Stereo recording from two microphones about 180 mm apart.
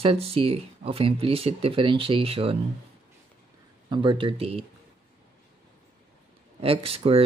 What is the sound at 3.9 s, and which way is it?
Speech, 25° right (ahead or behind).